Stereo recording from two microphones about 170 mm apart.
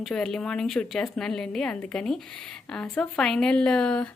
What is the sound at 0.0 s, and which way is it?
Speech, 5° left (ahead or behind).